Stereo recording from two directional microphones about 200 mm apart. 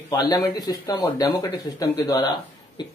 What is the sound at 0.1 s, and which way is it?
Speech, 15° left (ahead or behind).